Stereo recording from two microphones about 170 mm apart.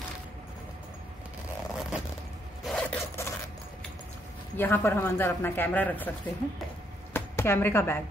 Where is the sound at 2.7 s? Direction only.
5° left (ahead or behind).